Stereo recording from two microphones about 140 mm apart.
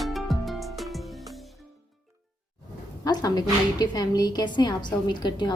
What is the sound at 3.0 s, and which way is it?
A woman's voice, 30° left (ahead or behind).